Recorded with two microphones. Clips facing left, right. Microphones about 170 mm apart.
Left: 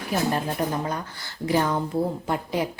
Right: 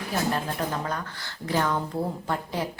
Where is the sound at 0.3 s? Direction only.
15° left (ahead or behind).